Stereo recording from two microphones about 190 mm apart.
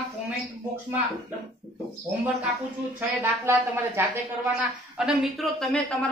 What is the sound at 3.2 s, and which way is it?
Speech, 10° right (ahead or behind).